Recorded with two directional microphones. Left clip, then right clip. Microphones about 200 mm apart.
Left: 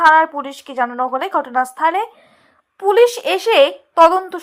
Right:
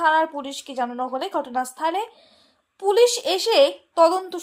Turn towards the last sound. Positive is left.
turn(degrees=10)  # may be behind; listen again after turning